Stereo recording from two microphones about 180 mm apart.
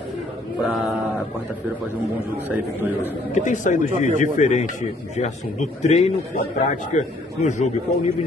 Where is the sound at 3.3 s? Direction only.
45° left (ahead or behind).